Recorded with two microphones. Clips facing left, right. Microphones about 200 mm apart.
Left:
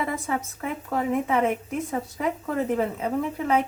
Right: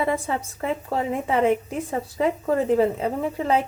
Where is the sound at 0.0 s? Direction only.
30° right (ahead or behind).